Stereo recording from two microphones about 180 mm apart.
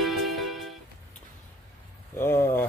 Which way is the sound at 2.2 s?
15° left (ahead or behind).